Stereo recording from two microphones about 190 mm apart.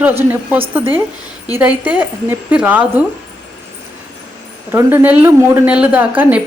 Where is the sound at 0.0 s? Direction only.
10° right (ahead or behind).